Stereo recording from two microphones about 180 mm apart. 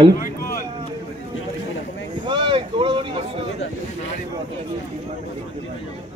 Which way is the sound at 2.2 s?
25° right (ahead or behind).